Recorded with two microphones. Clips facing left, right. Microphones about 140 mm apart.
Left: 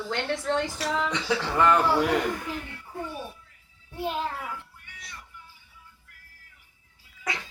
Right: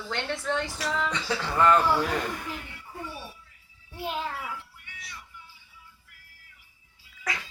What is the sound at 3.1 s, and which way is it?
Music, 50° left (ahead or behind).